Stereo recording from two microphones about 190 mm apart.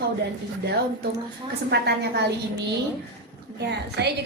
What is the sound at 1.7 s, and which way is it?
Speech, 60° right (ahead or behind).